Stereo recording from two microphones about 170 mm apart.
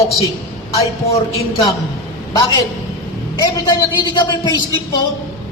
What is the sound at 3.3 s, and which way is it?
A woman's voice, 25° left (ahead or behind).